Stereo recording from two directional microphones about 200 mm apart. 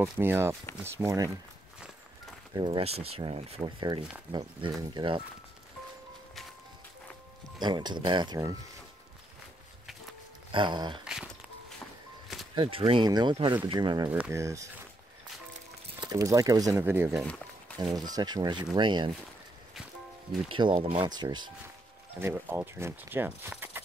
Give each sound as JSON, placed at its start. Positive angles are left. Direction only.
{"t": 0.0, "sound": "speech", "side_deg": -10}
{"t": 2.5, "sound": "speech", "side_deg": -25}
{"t": 7.5, "sound": "speech", "side_deg": -20}
{"t": 10.5, "sound": "speech", "side_deg": -25}
{"t": 11.8, "sound": "music", "side_deg": 0}
{"t": 12.5, "sound": "speech", "side_deg": -25}
{"t": 16.0, "sound": "speech", "side_deg": -20}
{"t": 17.2, "sound": "a sound", "side_deg": 5}
{"t": 17.9, "sound": "speech", "side_deg": -20}
{"t": 20.4, "sound": "speech", "side_deg": -25}
{"t": 22.2, "sound": "speech", "side_deg": -10}